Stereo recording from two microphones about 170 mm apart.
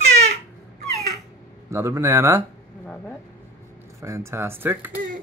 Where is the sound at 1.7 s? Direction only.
15° right (ahead or behind).